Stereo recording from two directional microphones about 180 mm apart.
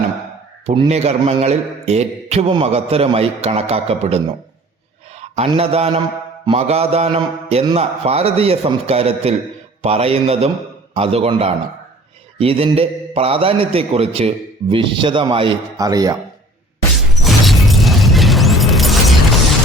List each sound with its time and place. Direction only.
0.6 s speech: 30° right (ahead or behind)
5.5 s a man's voice: 35° right (ahead or behind)
16.9 s music: centre (ahead or behind)